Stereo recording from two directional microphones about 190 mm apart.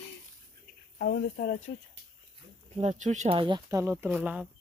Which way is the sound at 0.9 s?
55° left (ahead or behind).